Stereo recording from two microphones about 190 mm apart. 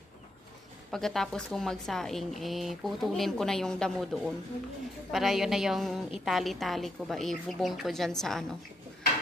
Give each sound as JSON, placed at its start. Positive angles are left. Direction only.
{"t": 0.9, "sound": "a woman's voice", "side_deg": 0}